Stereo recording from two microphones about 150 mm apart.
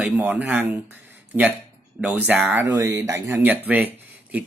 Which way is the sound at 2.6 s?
25° right (ahead or behind).